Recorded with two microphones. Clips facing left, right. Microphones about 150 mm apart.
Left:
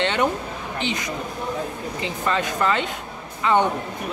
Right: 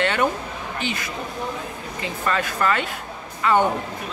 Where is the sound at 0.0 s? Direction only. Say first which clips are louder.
Even; 20° left (ahead or behind).